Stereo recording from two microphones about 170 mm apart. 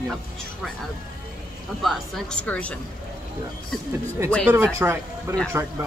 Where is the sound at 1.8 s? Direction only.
Centre (ahead or behind).